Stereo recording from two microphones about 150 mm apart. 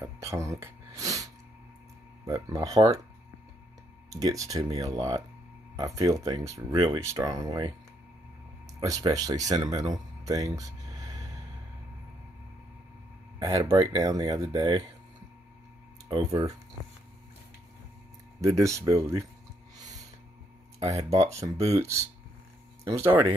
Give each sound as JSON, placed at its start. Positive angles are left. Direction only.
{"t": 0.0, "sound": "a sound", "side_deg": -20}
{"t": 2.2, "sound": "speech", "side_deg": -25}
{"t": 4.2, "sound": "speech", "side_deg": -25}
{"t": 8.7, "sound": "speech", "side_deg": -25}
{"t": 13.4, "sound": "speech", "side_deg": -25}
{"t": 16.1, "sound": "speech", "side_deg": -25}
{"t": 18.4, "sound": "speech", "side_deg": -20}
{"t": 20.8, "sound": "speech", "side_deg": -20}
{"t": 22.8, "sound": "speech", "side_deg": -20}